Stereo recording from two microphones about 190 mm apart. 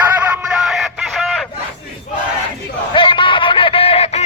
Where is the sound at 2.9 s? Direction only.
25° left (ahead or behind).